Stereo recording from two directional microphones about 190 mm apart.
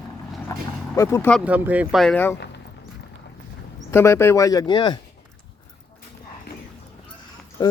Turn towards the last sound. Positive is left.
turn(degrees=20)  # may be behind; listen again after turning